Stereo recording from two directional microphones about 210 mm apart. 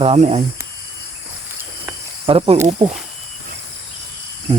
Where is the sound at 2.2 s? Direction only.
25° right (ahead or behind).